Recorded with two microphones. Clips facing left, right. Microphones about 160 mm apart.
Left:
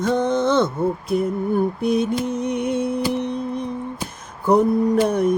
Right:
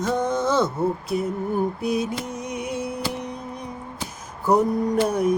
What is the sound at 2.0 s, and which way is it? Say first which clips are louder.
Music: left 6 dB; 10° right (ahead or behind).